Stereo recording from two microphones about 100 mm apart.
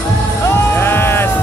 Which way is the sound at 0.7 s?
25° left (ahead or behind).